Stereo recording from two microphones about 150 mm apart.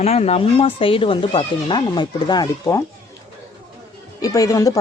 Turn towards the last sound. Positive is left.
turn(degrees=25)  # may be behind; listen again after turning